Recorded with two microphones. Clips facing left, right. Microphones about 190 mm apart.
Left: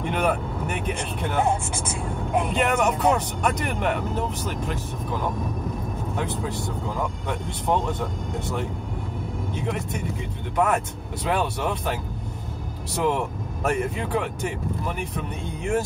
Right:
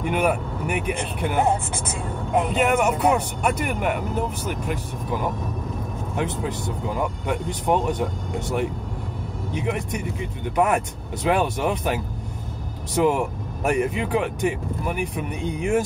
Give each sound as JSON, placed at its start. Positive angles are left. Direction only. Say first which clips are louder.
{"t": 0.0, "sound": "speech", "louder": "right 2 dB", "side_deg": -10}
{"t": 2.5, "sound": "speech", "louder": "right 2 dB", "side_deg": -10}